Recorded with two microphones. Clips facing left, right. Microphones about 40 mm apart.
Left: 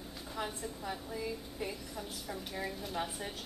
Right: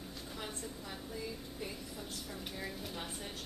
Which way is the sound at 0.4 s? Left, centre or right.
Centre.